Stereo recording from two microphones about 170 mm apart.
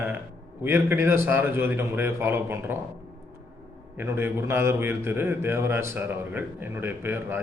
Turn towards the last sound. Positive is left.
turn(degrees=-15)  # may be behind; listen again after turning